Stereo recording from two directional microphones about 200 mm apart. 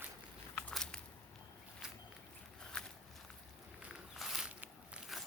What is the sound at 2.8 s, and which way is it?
Walk, 5° left (ahead or behind).